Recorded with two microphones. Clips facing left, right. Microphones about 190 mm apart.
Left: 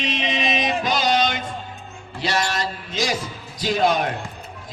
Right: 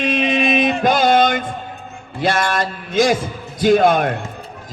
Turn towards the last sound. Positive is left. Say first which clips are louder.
# right 7 dB
turn(degrees=-55)  # may be behind; listen again after turning